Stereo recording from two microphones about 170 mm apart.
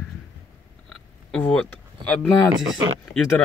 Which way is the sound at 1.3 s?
5° left (ahead or behind).